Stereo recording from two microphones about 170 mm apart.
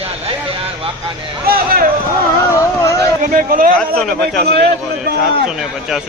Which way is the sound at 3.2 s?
55° right (ahead or behind).